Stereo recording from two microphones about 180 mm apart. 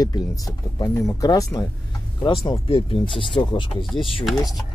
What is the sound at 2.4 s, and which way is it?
Speech, 30° left (ahead or behind).